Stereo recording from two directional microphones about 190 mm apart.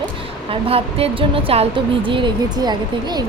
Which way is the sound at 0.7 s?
30° right (ahead or behind).